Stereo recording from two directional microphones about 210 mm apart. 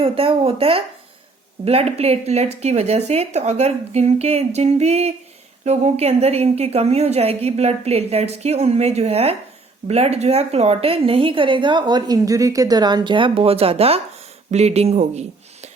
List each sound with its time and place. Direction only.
0.0 s a woman's voice: 25° right (ahead or behind)